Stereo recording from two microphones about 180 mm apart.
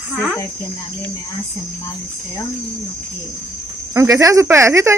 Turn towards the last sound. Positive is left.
turn(degrees=-15)  # may be behind; listen again after turning